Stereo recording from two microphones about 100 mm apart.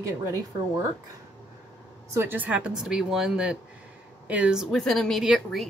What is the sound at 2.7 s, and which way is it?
Speech, 5° right (ahead or behind).